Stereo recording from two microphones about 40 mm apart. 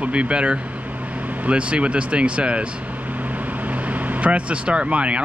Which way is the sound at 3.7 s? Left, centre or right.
Right.